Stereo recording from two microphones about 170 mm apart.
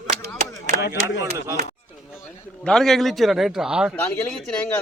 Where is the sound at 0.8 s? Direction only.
90° left.